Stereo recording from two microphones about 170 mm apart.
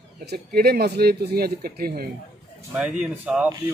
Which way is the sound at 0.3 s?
65° right (ahead or behind).